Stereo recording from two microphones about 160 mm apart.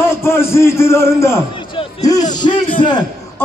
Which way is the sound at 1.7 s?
25° left (ahead or behind).